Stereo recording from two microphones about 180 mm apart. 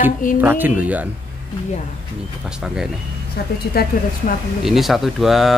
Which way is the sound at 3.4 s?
65° left (ahead or behind).